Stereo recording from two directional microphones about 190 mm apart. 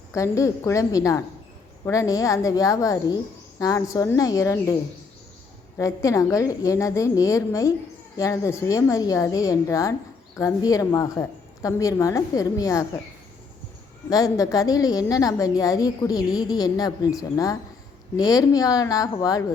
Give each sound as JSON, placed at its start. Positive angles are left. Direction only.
{"t": 0.1, "sound": "a woman's voice", "side_deg": 15}
{"t": 5.7, "sound": "a woman's voice", "side_deg": 15}
{"t": 14.1, "sound": "a woman's voice", "side_deg": 20}